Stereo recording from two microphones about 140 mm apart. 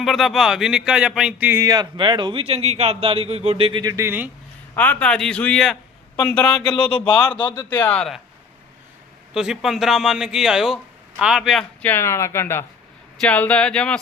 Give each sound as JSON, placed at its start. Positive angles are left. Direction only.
{"t": 0.0, "sound": "speech", "side_deg": 0}
{"t": 1.6, "sound": "a man's voice", "side_deg": -30}
{"t": 4.7, "sound": "a man's voice", "side_deg": 15}
{"t": 6.7, "sound": "speech", "side_deg": 35}
{"t": 7.7, "sound": "a man's voice", "side_deg": 10}
{"t": 9.3, "sound": "speech", "side_deg": -5}
{"t": 11.8, "sound": "a man's voice", "side_deg": 15}